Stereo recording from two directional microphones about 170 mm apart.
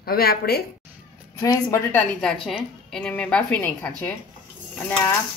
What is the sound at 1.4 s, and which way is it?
Dishes, 20° left (ahead or behind).